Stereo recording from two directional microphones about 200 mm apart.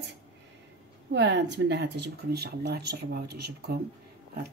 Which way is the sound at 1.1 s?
60° right (ahead or behind).